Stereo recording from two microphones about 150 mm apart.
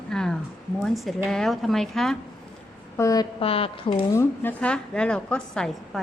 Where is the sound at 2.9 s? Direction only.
20° left (ahead or behind).